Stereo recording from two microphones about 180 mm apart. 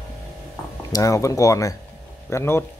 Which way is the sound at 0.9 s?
20° left (ahead or behind).